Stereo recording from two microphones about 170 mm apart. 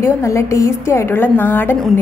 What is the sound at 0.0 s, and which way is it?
A woman's voice, 15° left (ahead or behind).